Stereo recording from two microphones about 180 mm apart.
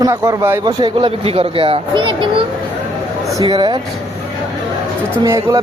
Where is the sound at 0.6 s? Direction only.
25° right (ahead or behind).